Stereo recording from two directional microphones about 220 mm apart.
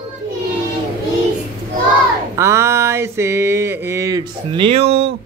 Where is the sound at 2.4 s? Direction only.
10° right (ahead or behind).